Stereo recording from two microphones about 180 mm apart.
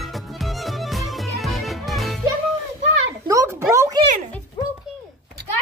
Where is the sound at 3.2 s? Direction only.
15° right (ahead or behind).